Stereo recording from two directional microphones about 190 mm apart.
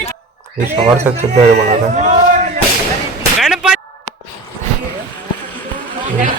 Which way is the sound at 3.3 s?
Centre (ahead or behind).